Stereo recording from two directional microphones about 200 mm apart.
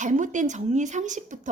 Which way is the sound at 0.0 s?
40° right (ahead or behind).